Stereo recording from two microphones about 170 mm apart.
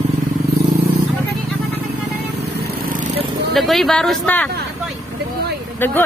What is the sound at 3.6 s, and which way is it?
Speech, centre (ahead or behind).